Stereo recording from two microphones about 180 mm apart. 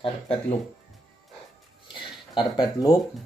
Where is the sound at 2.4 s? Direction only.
20° left (ahead or behind).